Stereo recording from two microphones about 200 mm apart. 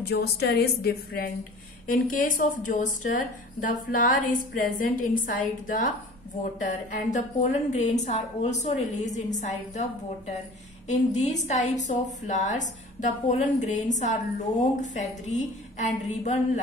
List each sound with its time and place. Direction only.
0.1 s a woman's voice: 55° left (ahead or behind); by 9.8 s 35° left (ahead or behind)
10.9 s a woman's voice: 35° left (ahead or behind)